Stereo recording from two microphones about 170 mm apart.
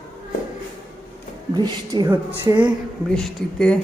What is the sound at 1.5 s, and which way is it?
A woman's voice, 25° right (ahead or behind).